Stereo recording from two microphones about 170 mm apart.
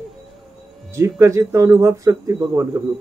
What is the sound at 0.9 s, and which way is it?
Speech, 15° right (ahead or behind).